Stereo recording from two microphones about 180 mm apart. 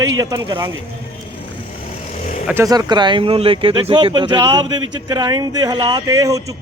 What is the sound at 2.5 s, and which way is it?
Speech, 20° right (ahead or behind).